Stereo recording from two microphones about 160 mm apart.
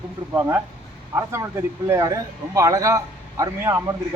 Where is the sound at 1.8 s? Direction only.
20° right (ahead or behind).